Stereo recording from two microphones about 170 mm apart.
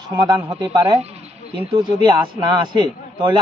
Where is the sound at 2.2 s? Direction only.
25° right (ahead or behind).